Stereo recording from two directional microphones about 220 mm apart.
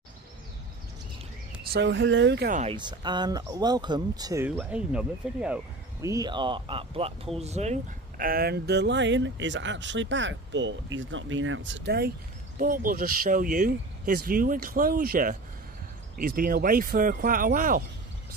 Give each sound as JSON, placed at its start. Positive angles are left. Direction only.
{"t": 1.7, "sound": "speech", "side_deg": -55}
{"t": 2.5, "sound": "speech", "side_deg": -25}
{"t": 12.5, "sound": "speech", "side_deg": -40}